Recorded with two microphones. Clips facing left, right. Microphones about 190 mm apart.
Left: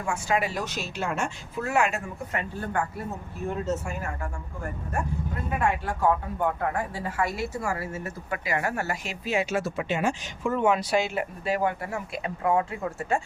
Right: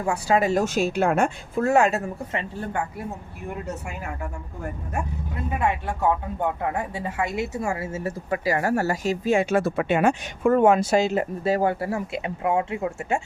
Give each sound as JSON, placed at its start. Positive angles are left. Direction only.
{"t": 0.0, "sound": "speech", "side_deg": -35}
{"t": 1.6, "sound": "speech", "side_deg": -40}
{"t": 5.5, "sound": "speech", "side_deg": -20}